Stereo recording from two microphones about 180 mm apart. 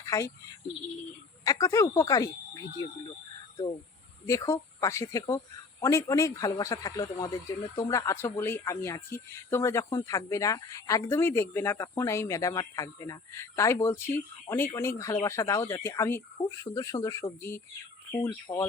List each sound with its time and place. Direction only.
0.0 s a sound: 20° left (ahead or behind)
1.5 s speech: 20° left (ahead or behind)
4.3 s speech: 15° left (ahead or behind)